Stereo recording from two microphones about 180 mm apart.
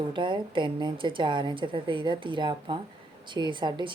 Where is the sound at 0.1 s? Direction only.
25° right (ahead or behind).